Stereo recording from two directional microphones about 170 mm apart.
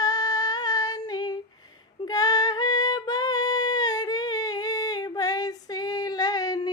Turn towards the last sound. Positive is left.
turn(degrees=25)  # may be behind; listen again after turning